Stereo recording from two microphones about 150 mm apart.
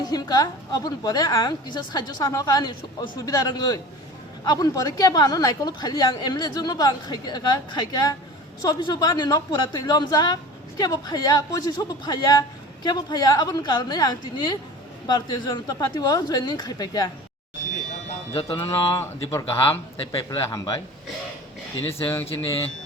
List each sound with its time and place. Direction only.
0.0 s a man's voice: 25° left (ahead or behind)
18.3 s mantra: 40° left (ahead or behind)
18.6 s a man's voice: 20° left (ahead or behind)
21.8 s speech: 15° left (ahead or behind)